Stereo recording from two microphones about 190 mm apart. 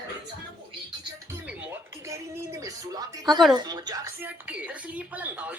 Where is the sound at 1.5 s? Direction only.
15° right (ahead or behind).